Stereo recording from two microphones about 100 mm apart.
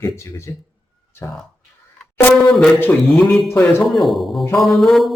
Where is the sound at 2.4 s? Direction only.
5° left (ahead or behind).